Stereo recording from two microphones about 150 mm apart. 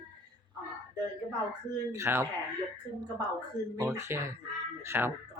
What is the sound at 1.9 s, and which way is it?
Speech, 15° right (ahead or behind).